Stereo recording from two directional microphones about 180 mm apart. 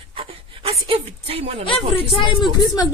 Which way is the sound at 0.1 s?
30° right (ahead or behind).